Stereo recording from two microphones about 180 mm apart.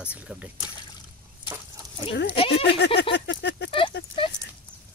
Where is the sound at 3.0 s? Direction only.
75° left (ahead or behind).